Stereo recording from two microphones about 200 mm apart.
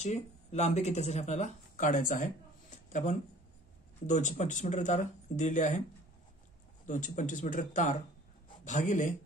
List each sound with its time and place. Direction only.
0.0 s speech: 35° left (ahead or behind)
2.7 s a sound: 40° left (ahead or behind)
4.1 s speech: 35° left (ahead or behind)
6.9 s speech: 40° left (ahead or behind)